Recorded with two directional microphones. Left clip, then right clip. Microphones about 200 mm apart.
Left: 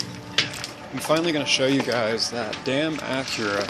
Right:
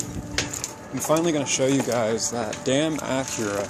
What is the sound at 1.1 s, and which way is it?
Speech, 20° right (ahead or behind).